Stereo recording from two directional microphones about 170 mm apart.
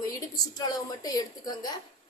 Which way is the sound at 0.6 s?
25° left (ahead or behind).